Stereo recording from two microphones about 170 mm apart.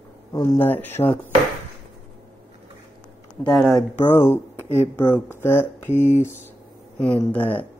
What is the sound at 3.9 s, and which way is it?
Speech, 15° left (ahead or behind).